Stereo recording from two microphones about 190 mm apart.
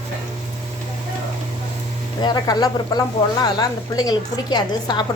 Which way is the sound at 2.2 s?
20° left (ahead or behind).